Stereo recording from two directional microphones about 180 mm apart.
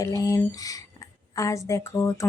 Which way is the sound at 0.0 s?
20° left (ahead or behind).